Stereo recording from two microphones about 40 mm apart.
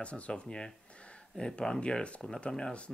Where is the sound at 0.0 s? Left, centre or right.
Left.